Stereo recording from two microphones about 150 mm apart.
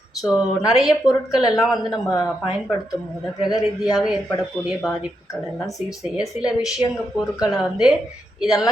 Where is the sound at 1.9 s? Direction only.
25° left (ahead or behind).